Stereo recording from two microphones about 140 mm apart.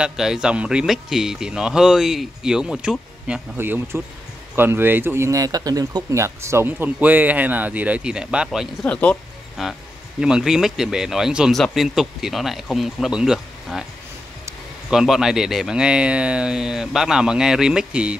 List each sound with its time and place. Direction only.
0.0 s speech: 5° right (ahead or behind)
3.5 s speech: 15° right (ahead or behind)
8.8 s speech: 10° left (ahead or behind)
9.6 s speech: centre (ahead or behind)
14.9 s speech: 5° right (ahead or behind)